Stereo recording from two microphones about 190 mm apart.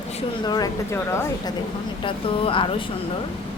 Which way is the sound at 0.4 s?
20° left (ahead or behind).